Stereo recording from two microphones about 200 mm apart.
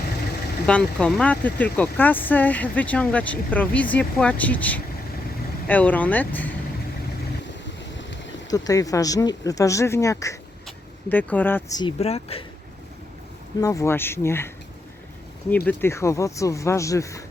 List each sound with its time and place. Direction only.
0.7 s speech: 5° left (ahead or behind)
7.9 s boat: 65° left (ahead or behind)
8.4 s speech: 20° left (ahead or behind)
11.8 s speech: 30° left (ahead or behind)
13.6 s speech: 15° left (ahead or behind)